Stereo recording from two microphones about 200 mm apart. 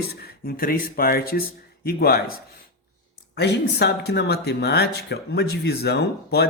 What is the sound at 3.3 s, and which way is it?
Speech, 55° left (ahead or behind).